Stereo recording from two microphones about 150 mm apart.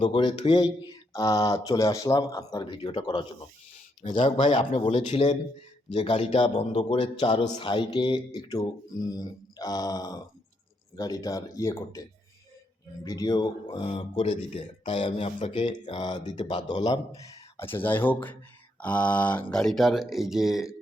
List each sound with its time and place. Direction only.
0.0 s speech: 35° left (ahead or behind)
4.4 s speech: 50° left (ahead or behind); by 20.7 s centre (ahead or behind)